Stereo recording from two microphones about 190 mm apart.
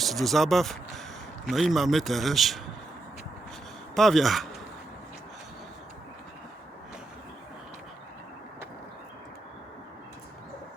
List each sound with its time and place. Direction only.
0.0 s a man's voice: centre (ahead or behind)
3.9 s a man's voice: centre (ahead or behind)